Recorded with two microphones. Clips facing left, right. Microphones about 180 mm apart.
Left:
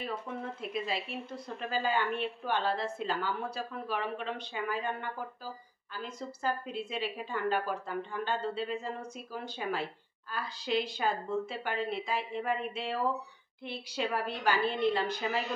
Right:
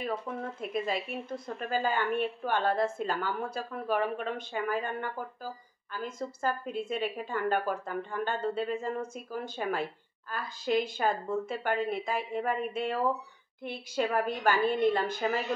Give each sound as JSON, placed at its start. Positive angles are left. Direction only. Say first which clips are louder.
{"t": 0.6, "sound": "a woman's voice", "louder": "right 4 dB", "side_deg": -45}